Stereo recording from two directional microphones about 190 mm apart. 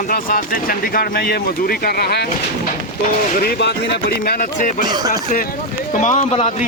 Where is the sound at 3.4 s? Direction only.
60° left (ahead or behind).